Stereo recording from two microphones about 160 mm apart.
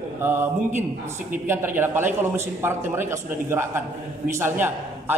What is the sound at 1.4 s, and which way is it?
A man's voice, 15° right (ahead or behind).